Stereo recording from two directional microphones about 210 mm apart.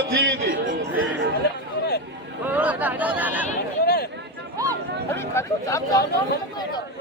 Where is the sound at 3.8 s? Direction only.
50° left (ahead or behind).